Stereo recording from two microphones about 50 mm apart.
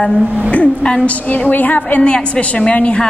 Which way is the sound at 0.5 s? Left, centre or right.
Left.